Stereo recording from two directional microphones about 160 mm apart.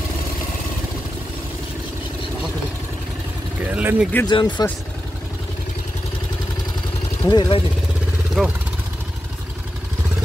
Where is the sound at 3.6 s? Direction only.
10° right (ahead or behind).